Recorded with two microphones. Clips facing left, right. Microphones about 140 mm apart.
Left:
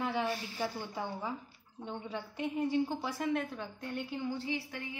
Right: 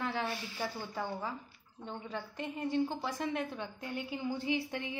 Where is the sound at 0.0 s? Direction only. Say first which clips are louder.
Left 2 dB; 15° left (ahead or behind).